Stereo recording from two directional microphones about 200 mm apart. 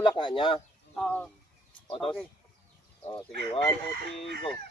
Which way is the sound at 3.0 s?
20° left (ahead or behind).